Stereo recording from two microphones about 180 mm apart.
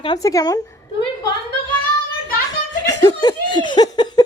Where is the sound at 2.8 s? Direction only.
20° left (ahead or behind).